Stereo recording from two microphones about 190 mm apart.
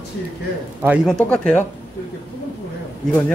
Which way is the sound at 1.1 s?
5° left (ahead or behind).